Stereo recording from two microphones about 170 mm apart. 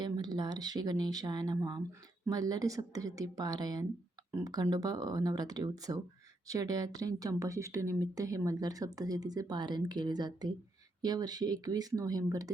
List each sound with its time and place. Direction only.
0.0 s a woman's voice: 25° right (ahead or behind)